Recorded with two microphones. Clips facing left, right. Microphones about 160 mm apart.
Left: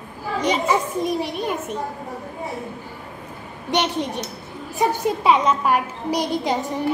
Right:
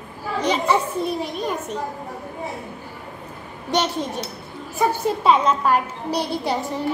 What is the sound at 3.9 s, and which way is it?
A child's voice, 15° left (ahead or behind).